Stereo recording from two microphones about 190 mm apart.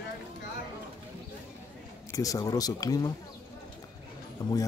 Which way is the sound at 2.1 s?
20° left (ahead or behind).